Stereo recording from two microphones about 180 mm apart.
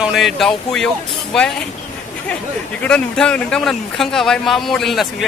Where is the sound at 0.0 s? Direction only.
Centre (ahead or behind).